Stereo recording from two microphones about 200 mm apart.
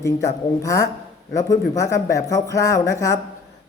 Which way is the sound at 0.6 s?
15° left (ahead or behind).